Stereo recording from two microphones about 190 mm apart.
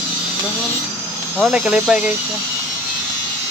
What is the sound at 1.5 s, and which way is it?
Speech, 5° right (ahead or behind).